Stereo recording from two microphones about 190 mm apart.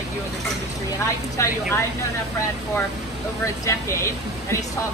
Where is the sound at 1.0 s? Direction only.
15° left (ahead or behind).